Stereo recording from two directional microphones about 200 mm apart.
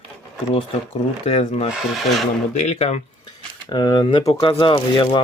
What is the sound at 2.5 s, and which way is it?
Speech, 35° left (ahead or behind).